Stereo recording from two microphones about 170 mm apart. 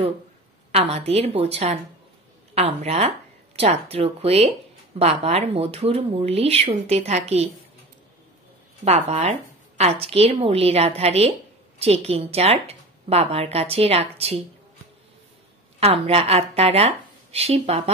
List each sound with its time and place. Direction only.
0.7 s speech: 35° right (ahead or behind)
8.8 s speech: 40° right (ahead or behind)
15.8 s speech: 35° right (ahead or behind)